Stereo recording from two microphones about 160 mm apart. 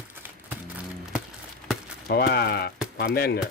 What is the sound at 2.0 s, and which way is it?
Speech, 80° left.